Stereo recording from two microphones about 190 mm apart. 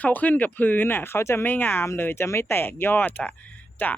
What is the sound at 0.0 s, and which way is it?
Speech, 10° left (ahead or behind).